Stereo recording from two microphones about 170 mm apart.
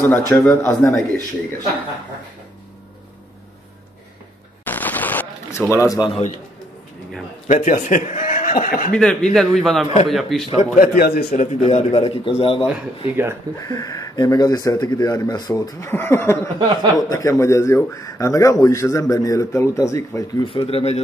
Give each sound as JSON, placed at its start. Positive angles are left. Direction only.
{"t": 0.3, "sound": "speech", "side_deg": 15}
{"t": 4.6, "sound": "a sound", "side_deg": 10}
{"t": 7.4, "sound": "a man's voice", "side_deg": 45}
{"t": 8.9, "sound": "speech", "side_deg": 5}
{"t": 10.4, "sound": "a man's voice", "side_deg": 35}
{"t": 11.0, "sound": "a man's voice", "side_deg": 70}
{"t": 11.3, "sound": "a man's voice", "side_deg": 40}
{"t": 12.6, "sound": "speech", "side_deg": -10}
{"t": 13.6, "sound": "speech", "side_deg": 20}
{"t": 16.5, "sound": "speech", "side_deg": -25}
{"t": 17.1, "sound": "speech", "side_deg": 20}
{"t": 20.4, "sound": "a man's voice", "side_deg": 35}